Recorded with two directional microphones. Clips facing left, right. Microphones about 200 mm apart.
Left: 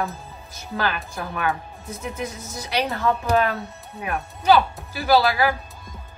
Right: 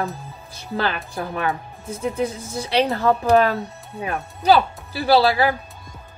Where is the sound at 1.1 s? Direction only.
30° right (ahead or behind).